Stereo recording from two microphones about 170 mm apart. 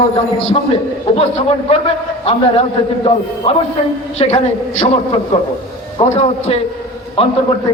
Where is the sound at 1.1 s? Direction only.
35° left (ahead or behind).